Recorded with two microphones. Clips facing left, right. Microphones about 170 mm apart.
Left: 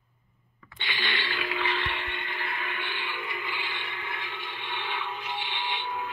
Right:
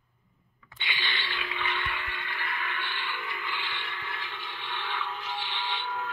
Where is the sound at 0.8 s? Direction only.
40° left (ahead or behind); by 3.1 s 20° left (ahead or behind).